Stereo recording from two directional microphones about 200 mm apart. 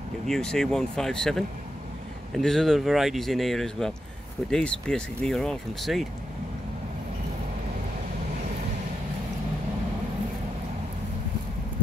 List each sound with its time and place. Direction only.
0.3 s speech: 5° left (ahead or behind)